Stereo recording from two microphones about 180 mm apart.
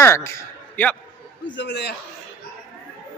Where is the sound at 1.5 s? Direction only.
85° left.